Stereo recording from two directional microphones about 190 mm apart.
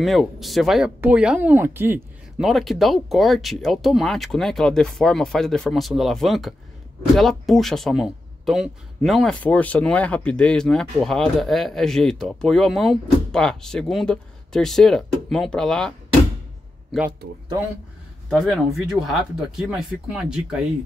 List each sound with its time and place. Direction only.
0.0 s speech: centre (ahead or behind)
2.3 s speech: centre (ahead or behind)
18.3 s speech: centre (ahead or behind)